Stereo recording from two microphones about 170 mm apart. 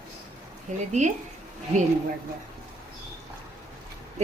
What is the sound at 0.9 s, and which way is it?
Speech, 45° right (ahead or behind).